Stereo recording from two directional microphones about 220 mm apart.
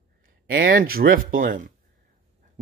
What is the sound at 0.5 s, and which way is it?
Speech, 45° right (ahead or behind).